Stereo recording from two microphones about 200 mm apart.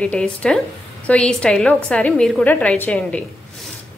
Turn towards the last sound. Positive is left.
turn(degrees=5)  # may be behind; listen again after turning